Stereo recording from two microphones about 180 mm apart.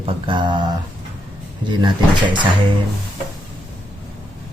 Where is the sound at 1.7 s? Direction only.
25° right (ahead or behind).